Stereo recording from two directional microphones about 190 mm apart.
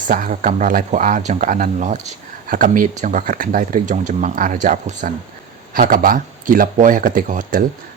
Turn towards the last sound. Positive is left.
turn(degrees=-45)  # may be behind; listen again after turning